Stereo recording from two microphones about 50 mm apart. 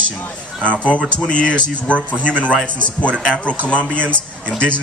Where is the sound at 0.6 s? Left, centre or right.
Left.